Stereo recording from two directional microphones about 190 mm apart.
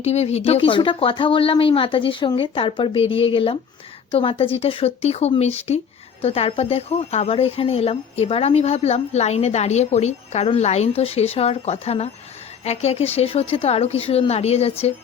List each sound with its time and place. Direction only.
0.0 s speech: 35° left (ahead or behind)